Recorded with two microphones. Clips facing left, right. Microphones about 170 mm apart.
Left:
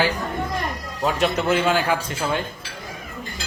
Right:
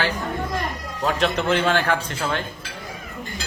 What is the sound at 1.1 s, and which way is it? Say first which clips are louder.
A man's voice: left 1 dB; 10° left (ahead or behind).